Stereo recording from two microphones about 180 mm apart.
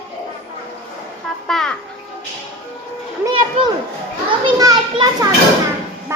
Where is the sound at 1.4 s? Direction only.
5° left (ahead or behind).